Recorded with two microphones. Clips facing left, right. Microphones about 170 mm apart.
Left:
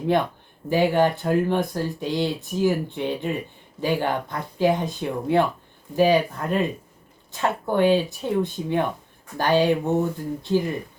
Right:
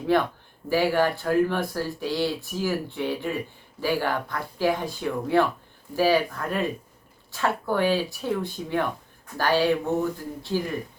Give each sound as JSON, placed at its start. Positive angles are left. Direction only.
{"t": 0.7, "sound": "speech", "side_deg": 20}